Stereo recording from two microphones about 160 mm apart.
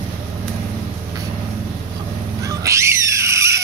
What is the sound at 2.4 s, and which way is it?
Cat, 20° right (ahead or behind).